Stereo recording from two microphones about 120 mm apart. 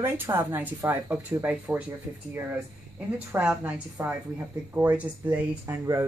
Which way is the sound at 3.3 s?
15° right (ahead or behind).